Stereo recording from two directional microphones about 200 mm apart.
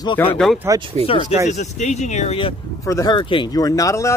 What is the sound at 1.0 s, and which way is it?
Speech, 25° left (ahead or behind).